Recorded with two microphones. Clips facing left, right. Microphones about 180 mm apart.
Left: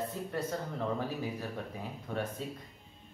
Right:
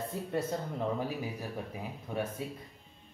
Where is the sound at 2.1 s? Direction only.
10° right (ahead or behind).